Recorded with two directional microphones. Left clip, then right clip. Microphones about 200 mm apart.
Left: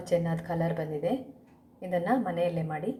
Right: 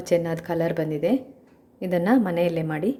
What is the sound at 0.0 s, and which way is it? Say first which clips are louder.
A woman's voice: right 6 dB; 45° right (ahead or behind).